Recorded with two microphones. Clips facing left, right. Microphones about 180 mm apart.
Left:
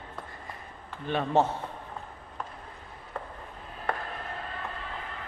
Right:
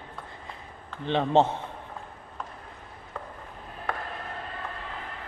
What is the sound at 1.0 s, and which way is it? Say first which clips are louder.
Speech: right 3 dB; 25° right (ahead or behind).